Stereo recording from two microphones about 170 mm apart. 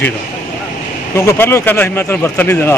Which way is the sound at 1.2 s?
15° left (ahead or behind).